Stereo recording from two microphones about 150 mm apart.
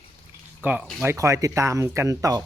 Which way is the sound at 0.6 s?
10° right (ahead or behind).